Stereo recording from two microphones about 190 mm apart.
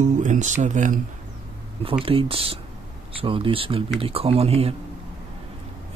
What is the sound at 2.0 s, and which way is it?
Speech, 30° right (ahead or behind).